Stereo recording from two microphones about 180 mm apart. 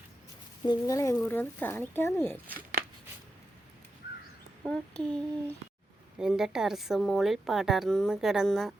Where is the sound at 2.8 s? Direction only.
55° right (ahead or behind).